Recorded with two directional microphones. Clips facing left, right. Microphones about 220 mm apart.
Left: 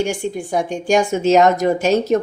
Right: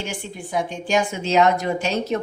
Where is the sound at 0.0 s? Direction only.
45° left (ahead or behind).